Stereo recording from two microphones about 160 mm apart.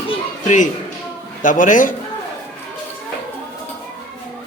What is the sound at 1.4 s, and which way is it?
Speech, 55° left (ahead or behind).